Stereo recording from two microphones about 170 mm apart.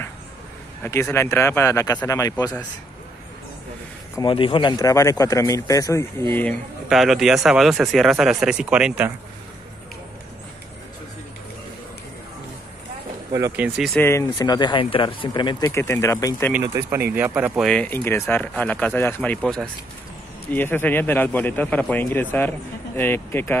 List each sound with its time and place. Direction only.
0.8 s speech: 15° left (ahead or behind)
4.2 s a man's voice: 30° left (ahead or behind); by 6.5 s 15° left (ahead or behind)
6.9 s speech: centre (ahead or behind)
13.3 s speech: 15° right (ahead or behind)
13.9 s a man's voice: 15° left (ahead or behind)
15.7 s speech: 15° left (ahead or behind)
16.6 s speech: 20° right (ahead or behind)
17.6 s speech: 10° left (ahead or behind)